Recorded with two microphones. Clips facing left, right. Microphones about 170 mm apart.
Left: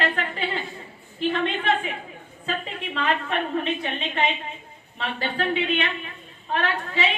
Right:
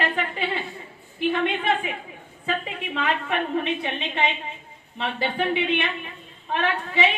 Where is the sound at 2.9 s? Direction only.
15° right (ahead or behind).